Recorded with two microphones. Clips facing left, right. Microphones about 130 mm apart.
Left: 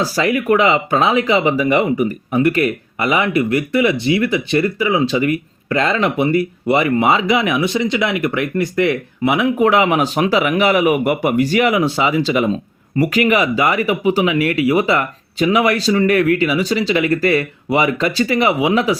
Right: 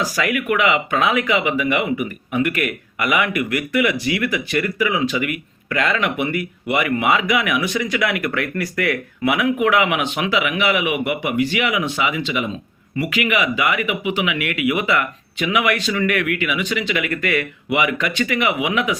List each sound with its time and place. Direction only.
0.0 s speech: 30° left (ahead or behind)